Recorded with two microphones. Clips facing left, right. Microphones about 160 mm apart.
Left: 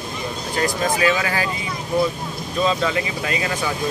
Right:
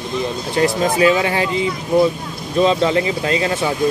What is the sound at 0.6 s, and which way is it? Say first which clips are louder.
Speech: right 5 dB; 25° right (ahead or behind).